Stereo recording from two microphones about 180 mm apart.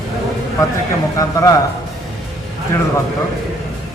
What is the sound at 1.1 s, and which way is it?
Speech, 20° left (ahead or behind).